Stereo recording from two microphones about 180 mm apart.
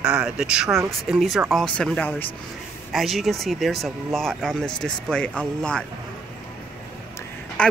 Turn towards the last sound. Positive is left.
turn(degrees=5)  # may be behind; listen again after turning